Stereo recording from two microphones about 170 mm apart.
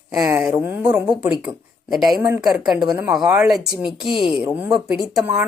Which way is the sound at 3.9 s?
30° left (ahead or behind).